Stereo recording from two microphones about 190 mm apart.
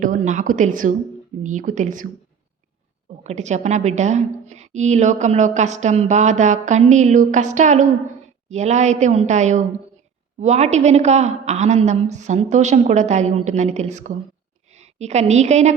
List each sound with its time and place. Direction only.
0.0 s a woman's voice: 45° right (ahead or behind)
3.2 s a woman's voice: 40° right (ahead or behind)